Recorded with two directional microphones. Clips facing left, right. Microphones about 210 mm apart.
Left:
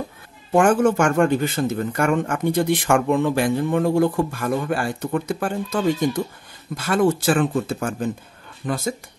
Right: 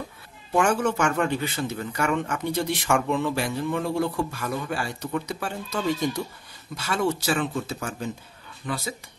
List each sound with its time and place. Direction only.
0.5 s a man's voice: 50° left (ahead or behind)